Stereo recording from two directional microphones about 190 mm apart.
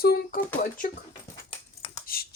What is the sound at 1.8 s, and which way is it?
Finger snapping, 30° left (ahead or behind).